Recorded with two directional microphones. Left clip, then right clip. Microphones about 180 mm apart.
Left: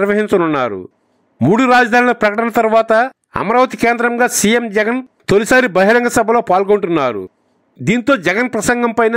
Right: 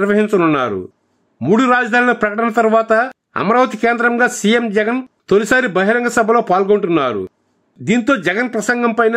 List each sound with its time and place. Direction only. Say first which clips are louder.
0.0 s speech: even; 45° left (ahead or behind)